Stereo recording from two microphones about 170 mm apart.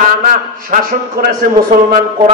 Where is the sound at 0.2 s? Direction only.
55° right (ahead or behind).